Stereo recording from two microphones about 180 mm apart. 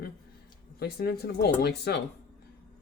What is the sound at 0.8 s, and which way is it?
Speech, 60° left (ahead or behind).